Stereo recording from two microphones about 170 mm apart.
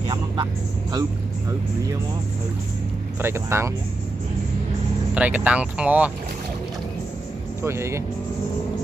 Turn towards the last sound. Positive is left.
turn(degrees=-15)  # may be behind; listen again after turning